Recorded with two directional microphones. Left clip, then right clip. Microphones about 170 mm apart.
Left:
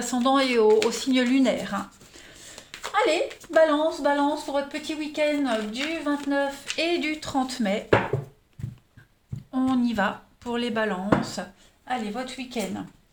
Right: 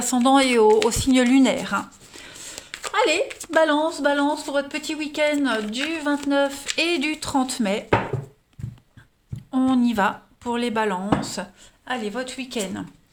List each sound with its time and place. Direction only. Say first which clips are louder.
0.0 s speech: right 4 dB; 50° right (ahead or behind)
9.5 s speech: right 4 dB; 40° right (ahead or behind)
11.2 s speech: right 2 dB; 50° right (ahead or behind)